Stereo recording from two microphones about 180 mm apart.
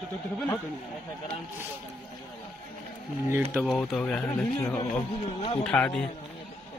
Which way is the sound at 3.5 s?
Centre (ahead or behind).